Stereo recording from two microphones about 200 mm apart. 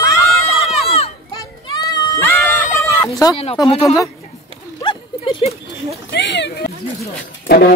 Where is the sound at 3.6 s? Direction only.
15° left (ahead or behind).